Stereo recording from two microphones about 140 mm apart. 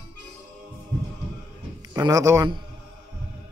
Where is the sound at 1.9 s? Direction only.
25° right (ahead or behind).